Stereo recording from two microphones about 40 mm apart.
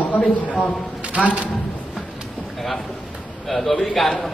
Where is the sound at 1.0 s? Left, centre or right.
Right.